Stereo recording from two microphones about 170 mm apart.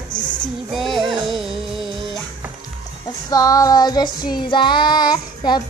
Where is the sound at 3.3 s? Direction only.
20° left (ahead or behind).